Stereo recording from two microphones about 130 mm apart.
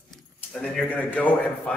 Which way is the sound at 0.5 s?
5° left (ahead or behind).